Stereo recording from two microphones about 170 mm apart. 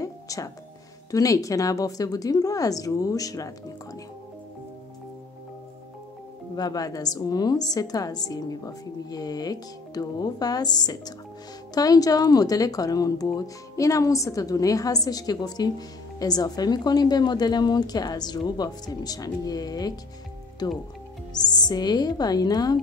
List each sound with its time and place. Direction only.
0.0 s music: 20° left (ahead or behind)
1.1 s a woman's voice: 20° left (ahead or behind)
6.5 s a woman's voice: 25° left (ahead or behind)
21.3 s a woman's voice: 25° left (ahead or behind)